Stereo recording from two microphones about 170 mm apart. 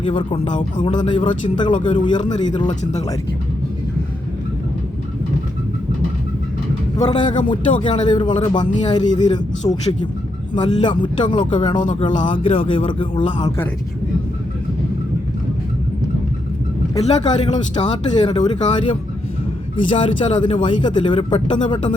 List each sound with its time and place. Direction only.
0.0 s a man's voice: 30° left (ahead or behind)
6.9 s a man's voice: 25° left (ahead or behind)
16.9 s a man's voice: 25° left (ahead or behind)
19.9 s a man's voice: 30° left (ahead or behind)